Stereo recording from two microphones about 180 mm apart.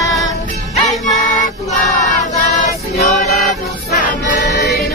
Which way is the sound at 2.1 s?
40° left (ahead or behind).